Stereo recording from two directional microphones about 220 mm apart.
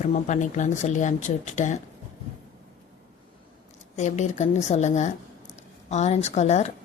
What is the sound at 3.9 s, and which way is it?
A woman's voice, 30° left (ahead or behind).